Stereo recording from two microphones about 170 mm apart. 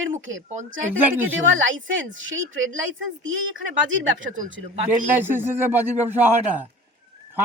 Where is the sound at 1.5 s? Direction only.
90° right.